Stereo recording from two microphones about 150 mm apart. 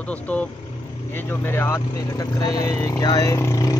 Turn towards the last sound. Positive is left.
turn(degrees=20)  # may be behind; listen again after turning